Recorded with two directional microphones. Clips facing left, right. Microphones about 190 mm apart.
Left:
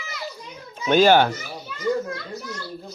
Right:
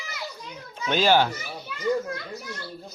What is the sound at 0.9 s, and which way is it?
Speech, 50° left (ahead or behind).